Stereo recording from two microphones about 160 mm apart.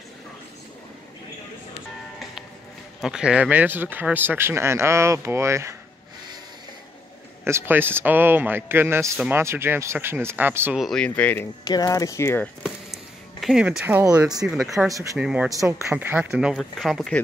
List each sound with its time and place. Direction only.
3.0 s speech: 5° right (ahead or behind)
7.4 s speech: 15° right (ahead or behind)
10.8 s speech: centre (ahead or behind)
11.6 s speech: 25° left (ahead or behind)
12.6 s a sound: centre (ahead or behind)
14.4 s speech: 10° right (ahead or behind)
15.5 s speech: 15° right (ahead or behind); by 17.2 s centre (ahead or behind)